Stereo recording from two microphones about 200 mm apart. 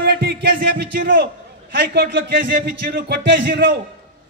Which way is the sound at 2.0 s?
55° right (ahead or behind).